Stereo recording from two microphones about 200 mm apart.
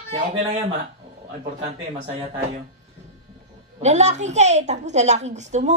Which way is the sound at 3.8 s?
35° right (ahead or behind).